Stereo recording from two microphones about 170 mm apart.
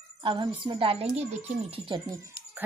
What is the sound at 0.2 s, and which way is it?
A woman's voice, 25° right (ahead or behind).